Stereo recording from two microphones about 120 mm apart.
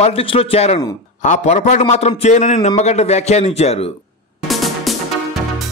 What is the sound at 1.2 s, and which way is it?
A man's voice, 80° left.